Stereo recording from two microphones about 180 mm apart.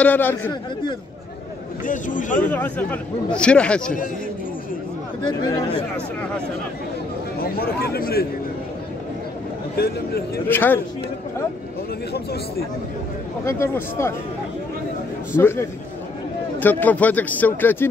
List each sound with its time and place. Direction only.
0.0 s speech: 10° left (ahead or behind)
1.9 s a man's voice: 45° left (ahead or behind)
2.5 s speech: 10° left (ahead or behind)
7.3 s speech: 55° left (ahead or behind)
9.8 s speech: 60° left (ahead or behind)
10.5 s speech: 10° left (ahead or behind)
12.1 s speech: 60° left (ahead or behind)
13.5 s speech: 15° left (ahead or behind)
15.3 s speech: 10° left (ahead or behind)